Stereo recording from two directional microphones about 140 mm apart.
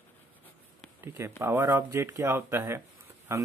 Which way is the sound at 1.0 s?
15° right (ahead or behind).